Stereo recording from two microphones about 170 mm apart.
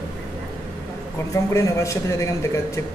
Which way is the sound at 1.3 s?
20° left (ahead or behind).